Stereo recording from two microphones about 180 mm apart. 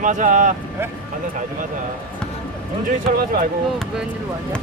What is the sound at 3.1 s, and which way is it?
Speech, 55° right (ahead or behind).